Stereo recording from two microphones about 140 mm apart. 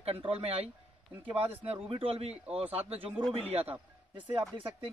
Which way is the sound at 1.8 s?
45° right (ahead or behind).